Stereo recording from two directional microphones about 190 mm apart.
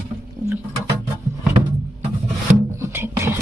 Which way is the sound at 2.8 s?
15° right (ahead or behind).